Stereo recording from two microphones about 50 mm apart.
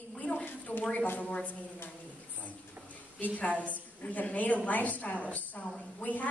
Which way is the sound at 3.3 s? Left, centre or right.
Left.